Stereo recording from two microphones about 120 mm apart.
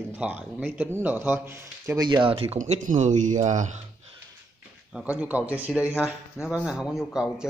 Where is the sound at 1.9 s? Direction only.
40° right (ahead or behind).